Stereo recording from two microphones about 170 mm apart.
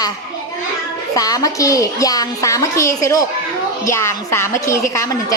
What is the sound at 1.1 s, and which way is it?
A woman's voice, 20° left (ahead or behind).